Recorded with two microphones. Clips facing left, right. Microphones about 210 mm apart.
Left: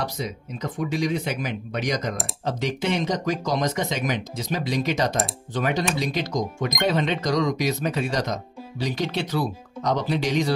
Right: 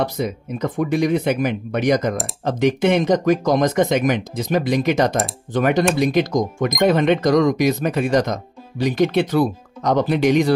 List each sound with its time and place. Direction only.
0.0 s speech: 55° right (ahead or behind)